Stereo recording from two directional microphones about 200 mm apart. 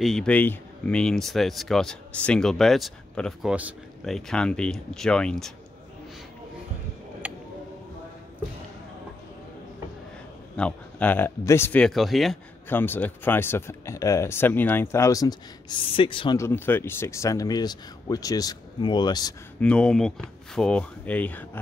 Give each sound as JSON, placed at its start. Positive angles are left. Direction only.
{"t": 0.0, "sound": "speech", "side_deg": 0}
{"t": 7.2, "sound": "a sound", "side_deg": -5}
{"t": 10.5, "sound": "speech", "side_deg": 5}
{"t": 16.3, "sound": "speech", "side_deg": 10}
{"t": 19.6, "sound": "speech", "side_deg": 5}